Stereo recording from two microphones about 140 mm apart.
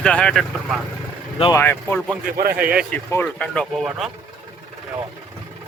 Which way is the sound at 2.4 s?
90° right.